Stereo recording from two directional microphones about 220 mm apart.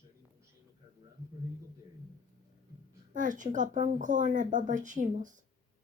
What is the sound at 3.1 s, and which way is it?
Speech, 35° right (ahead or behind).